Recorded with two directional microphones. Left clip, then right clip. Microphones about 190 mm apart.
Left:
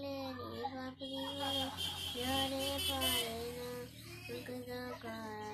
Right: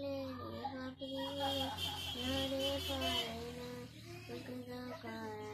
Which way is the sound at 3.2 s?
50° left (ahead or behind).